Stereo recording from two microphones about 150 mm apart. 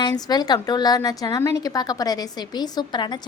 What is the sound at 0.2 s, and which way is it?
A woman's voice, 25° left (ahead or behind).